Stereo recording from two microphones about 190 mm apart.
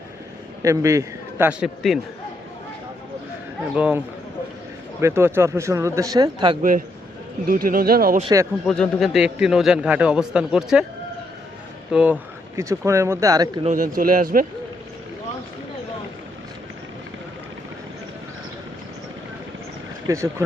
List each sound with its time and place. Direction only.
0.6 s speech: 15° right (ahead or behind)
3.8 s speech: 5° right (ahead or behind); by 6.6 s 25° right (ahead or behind)
6.6 s speech: 45° right (ahead or behind)
8.2 s speech: 20° right (ahead or behind)
8.6 s a man's voice: 5° left (ahead or behind)
11.9 s speech: 5° right (ahead or behind)
13.7 s speech: 45° right (ahead or behind)
20.1 s speech: 15° right (ahead or behind)